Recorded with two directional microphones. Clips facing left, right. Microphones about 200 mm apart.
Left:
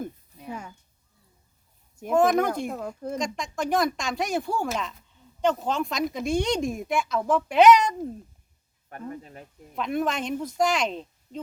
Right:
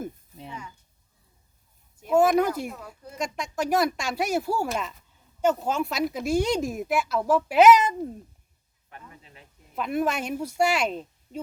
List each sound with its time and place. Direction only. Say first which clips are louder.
2.1 s speech: right 1 dB; 5° right (ahead or behind)
2.6 s speech: left 7 dB; 50° left (ahead or behind)
3.2 s speech: right 3 dB; 5° right (ahead or behind)
8.9 s speech: left 11 dB; 45° left (ahead or behind)
9.7 s speech: right 1 dB; 5° right (ahead or behind)